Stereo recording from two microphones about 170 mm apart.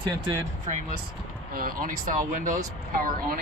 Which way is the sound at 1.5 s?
55° right (ahead or behind).